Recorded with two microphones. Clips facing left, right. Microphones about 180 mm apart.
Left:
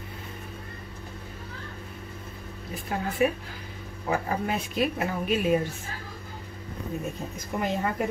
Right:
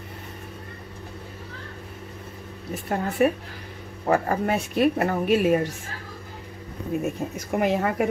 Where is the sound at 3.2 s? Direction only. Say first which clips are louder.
Right 4 dB; 50° right (ahead or behind).